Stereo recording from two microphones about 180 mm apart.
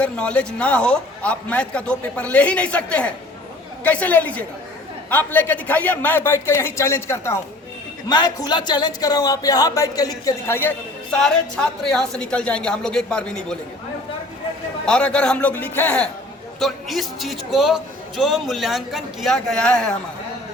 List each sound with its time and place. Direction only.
0.0 s a man's voice: 5° left (ahead or behind)
14.8 s a man's voice: 5° left (ahead or behind)